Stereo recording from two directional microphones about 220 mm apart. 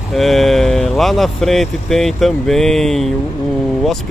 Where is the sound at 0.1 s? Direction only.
Centre (ahead or behind).